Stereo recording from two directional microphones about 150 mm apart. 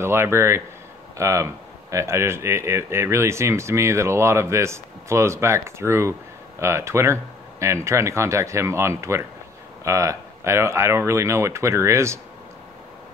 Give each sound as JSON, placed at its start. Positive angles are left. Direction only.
{"t": 0.0, "sound": "speech", "side_deg": -15}